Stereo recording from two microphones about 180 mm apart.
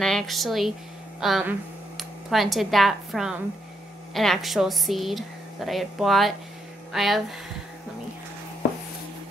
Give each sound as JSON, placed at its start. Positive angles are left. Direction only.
{"t": 0.0, "sound": "a woman's voice", "side_deg": 0}